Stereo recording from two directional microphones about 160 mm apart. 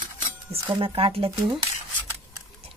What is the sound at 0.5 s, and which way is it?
Speech, 35° right (ahead or behind).